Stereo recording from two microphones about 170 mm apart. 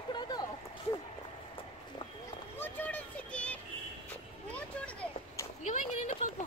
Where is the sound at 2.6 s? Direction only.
10° left (ahead or behind).